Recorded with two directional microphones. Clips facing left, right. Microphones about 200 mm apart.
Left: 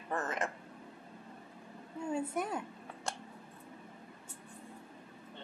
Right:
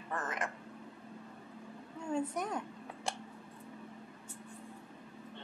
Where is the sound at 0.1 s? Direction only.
25° left (ahead or behind).